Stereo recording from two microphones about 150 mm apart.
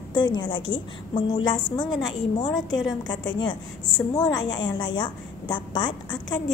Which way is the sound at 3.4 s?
30° left (ahead or behind).